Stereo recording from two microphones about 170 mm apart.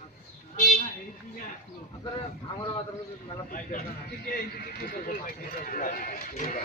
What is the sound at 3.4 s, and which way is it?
Speech, 50° left (ahead or behind).